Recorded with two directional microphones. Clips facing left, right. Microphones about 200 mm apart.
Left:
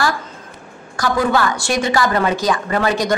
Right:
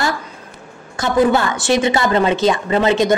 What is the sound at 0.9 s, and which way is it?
A woman's voice, 25° right (ahead or behind).